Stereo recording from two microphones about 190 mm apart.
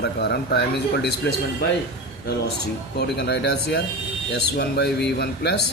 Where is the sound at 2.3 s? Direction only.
60° left (ahead or behind).